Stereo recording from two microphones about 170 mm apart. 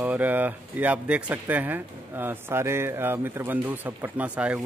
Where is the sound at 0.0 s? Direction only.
10° right (ahead or behind).